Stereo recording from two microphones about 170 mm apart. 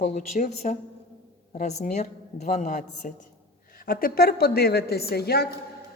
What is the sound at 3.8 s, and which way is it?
A woman's voice, 60° left (ahead or behind).